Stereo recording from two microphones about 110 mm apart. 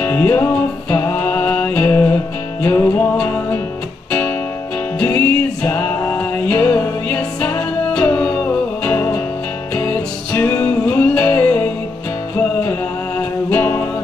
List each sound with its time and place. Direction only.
0.0 s music: 15° left (ahead or behind)
5.0 s music: 15° left (ahead or behind)